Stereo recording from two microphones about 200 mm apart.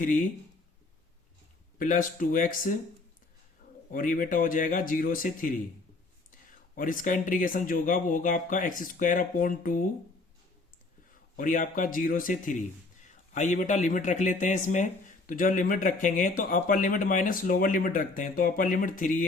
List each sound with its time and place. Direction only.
0.0 s speech: 40° left (ahead or behind)
1.8 s speech: 40° left (ahead or behind)
3.9 s speech: 40° left (ahead or behind)
6.7 s speech: 45° left (ahead or behind)
11.3 s speech: 40° left (ahead or behind)